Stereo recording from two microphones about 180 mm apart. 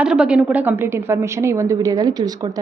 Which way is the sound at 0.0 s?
5° right (ahead or behind).